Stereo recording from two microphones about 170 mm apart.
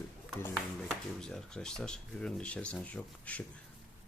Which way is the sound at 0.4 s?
5° left (ahead or behind).